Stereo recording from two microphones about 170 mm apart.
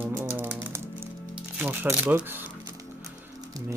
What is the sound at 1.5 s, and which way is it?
Speech, 10° right (ahead or behind).